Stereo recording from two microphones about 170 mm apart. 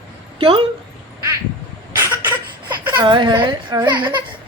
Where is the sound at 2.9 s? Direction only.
25° right (ahead or behind).